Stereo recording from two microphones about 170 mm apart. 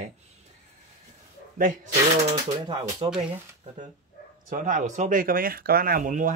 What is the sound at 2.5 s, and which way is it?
Speech, 30° right (ahead or behind).